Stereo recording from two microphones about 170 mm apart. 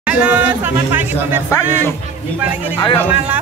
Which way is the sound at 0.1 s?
10° right (ahead or behind).